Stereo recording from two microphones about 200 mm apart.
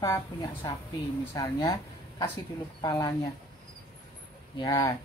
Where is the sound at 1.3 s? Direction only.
20° left (ahead or behind).